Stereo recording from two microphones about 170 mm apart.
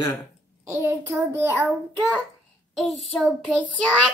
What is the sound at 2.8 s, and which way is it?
Speech, centre (ahead or behind).